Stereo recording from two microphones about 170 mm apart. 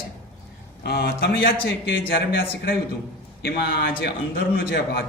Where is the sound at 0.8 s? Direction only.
75° left (ahead or behind); by 2.0 s 90° left.